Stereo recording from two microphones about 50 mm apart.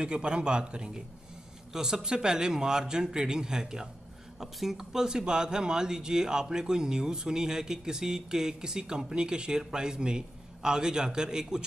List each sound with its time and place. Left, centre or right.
0.0 s speech: centre